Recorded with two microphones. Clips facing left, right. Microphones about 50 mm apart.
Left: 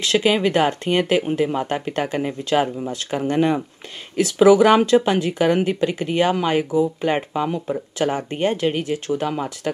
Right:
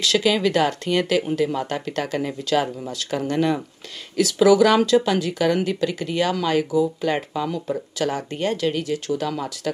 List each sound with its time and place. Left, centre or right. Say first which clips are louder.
0.0 s speech: left 1 dB; left